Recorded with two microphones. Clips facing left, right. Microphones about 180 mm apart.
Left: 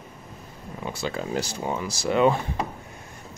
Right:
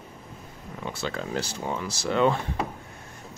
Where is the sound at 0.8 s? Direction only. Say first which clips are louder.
Left 2 dB; 10° left (ahead or behind).